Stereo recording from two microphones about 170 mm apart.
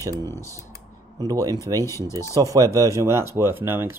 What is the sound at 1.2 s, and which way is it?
Speech, 20° right (ahead or behind).